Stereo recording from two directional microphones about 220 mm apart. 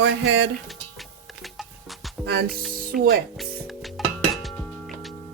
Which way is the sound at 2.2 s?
45° right (ahead or behind).